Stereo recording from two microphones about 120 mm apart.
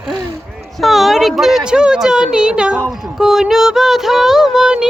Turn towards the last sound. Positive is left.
turn(degrees=-5)  # may be behind; listen again after turning